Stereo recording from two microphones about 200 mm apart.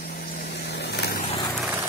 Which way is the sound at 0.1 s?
50° left (ahead or behind).